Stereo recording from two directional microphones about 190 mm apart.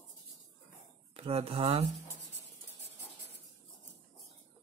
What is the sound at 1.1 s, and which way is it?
Speech, 30° right (ahead or behind).